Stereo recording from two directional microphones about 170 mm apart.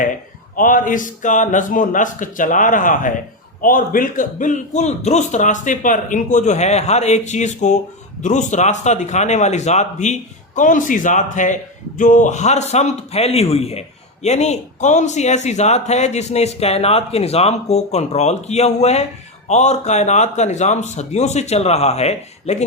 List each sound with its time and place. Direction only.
0.5 s a man's voice: 50° left (ahead or behind)